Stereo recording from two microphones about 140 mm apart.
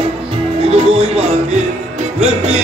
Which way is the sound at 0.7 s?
50° right (ahead or behind).